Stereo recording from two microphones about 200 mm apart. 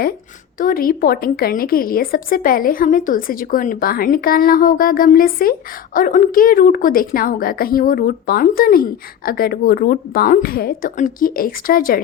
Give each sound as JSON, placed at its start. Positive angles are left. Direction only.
{"t": 0.6, "sound": "a woman's voice", "side_deg": 45}